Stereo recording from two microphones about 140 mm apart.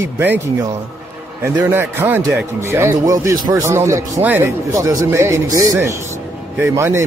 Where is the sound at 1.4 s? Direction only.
15° right (ahead or behind).